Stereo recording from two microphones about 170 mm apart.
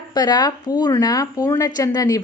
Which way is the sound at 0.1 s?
25° left (ahead or behind).